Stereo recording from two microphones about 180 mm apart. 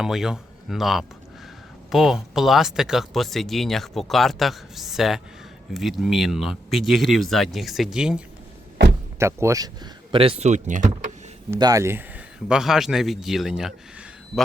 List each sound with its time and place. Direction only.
0.0 s speech: 5° right (ahead or behind)
9.1 s speech: 15° right (ahead or behind)
10.1 s speech: 30° right (ahead or behind)
11.5 s speech: 15° right (ahead or behind)
12.5 s speech: 5° right (ahead or behind)